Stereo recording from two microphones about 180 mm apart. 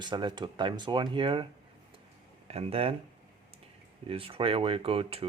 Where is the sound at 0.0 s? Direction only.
25° right (ahead or behind).